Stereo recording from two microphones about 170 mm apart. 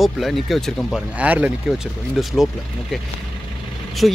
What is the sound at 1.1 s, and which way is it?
Speech, 10° right (ahead or behind).